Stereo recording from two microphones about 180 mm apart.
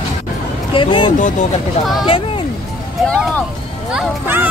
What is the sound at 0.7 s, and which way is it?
Speech, 25° left (ahead or behind).